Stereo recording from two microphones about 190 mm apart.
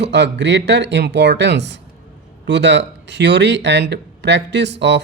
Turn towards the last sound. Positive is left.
turn(degrees=-65)  # may be behind; listen again after turning